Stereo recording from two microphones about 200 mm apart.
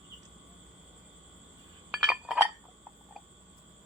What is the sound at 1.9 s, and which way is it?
Chink, centre (ahead or behind).